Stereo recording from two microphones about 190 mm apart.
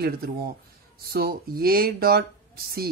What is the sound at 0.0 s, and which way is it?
A woman's voice, 50° right (ahead or behind).